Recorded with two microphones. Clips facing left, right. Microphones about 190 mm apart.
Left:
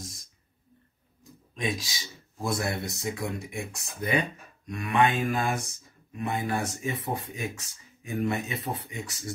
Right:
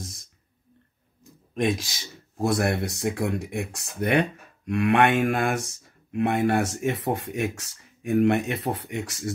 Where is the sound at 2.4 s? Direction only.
75° right (ahead or behind).